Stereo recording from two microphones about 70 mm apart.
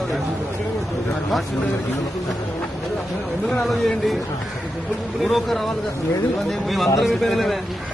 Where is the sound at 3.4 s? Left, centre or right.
Centre.